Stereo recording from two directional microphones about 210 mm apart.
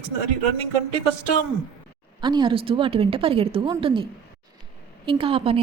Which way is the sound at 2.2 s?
20° right (ahead or behind).